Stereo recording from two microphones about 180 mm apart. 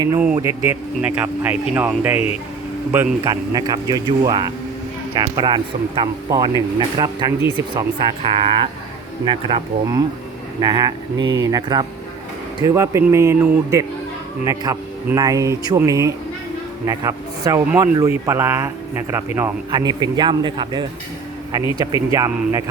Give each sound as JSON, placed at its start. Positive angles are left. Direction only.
{"t": 0.3, "sound": "speech", "side_deg": -15}
{"t": 2.1, "sound": "speech", "side_deg": 35}
{"t": 2.9, "sound": "a man's voice", "side_deg": -15}
{"t": 19.8, "sound": "speech", "side_deg": -25}